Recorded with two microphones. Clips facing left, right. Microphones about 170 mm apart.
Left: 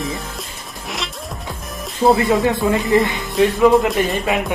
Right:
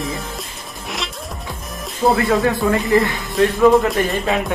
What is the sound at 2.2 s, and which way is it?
Speech, 20° left (ahead or behind).